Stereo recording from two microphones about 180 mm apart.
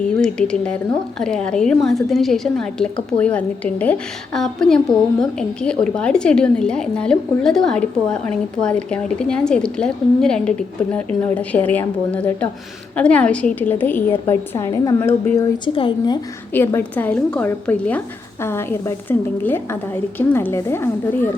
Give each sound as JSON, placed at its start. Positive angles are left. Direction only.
{"t": 0.2, "sound": "a woman's voice", "side_deg": 5}
{"t": 15.6, "sound": "a woman's voice", "side_deg": 30}
{"t": 16.5, "sound": "a woman's voice", "side_deg": 10}